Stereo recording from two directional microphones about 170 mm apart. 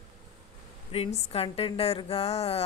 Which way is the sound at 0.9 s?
35° left (ahead or behind).